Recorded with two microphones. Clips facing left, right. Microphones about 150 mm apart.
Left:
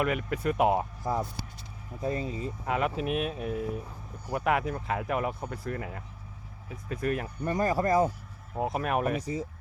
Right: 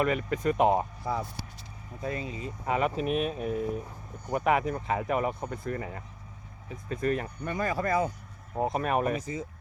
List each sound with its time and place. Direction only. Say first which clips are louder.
0.0 s speech: right 2 dB; 5° left (ahead or behind)
2.0 s speech: left 3 dB; 35° left (ahead or behind)
2.6 s speech: right 2 dB; centre (ahead or behind)
7.4 s speech: left 5 dB; 40° left (ahead or behind)
8.5 s speech: right 1 dB; 5° left (ahead or behind)